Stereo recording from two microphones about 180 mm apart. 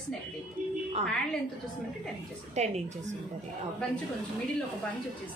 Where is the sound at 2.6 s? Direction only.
40° right (ahead or behind).